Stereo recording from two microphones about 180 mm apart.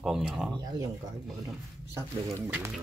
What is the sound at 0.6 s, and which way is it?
Speech, 20° right (ahead or behind).